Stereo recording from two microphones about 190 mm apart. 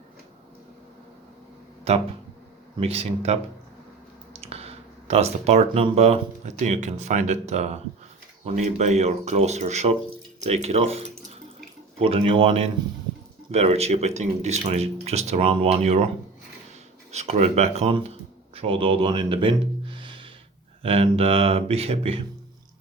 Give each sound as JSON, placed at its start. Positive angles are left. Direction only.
{"t": 2.7, "sound": "speech", "side_deg": -30}
{"t": 17.1, "sound": "speech", "side_deg": -35}